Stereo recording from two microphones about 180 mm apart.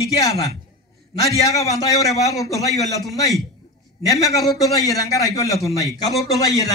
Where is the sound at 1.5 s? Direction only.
20° left (ahead or behind).